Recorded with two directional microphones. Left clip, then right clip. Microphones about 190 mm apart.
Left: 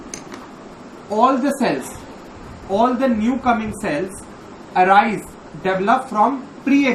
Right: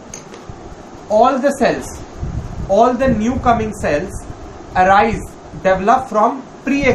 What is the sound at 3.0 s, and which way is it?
A woman's voice, 15° right (ahead or behind).